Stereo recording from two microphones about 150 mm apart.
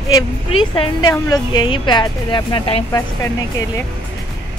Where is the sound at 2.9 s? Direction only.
20° left (ahead or behind).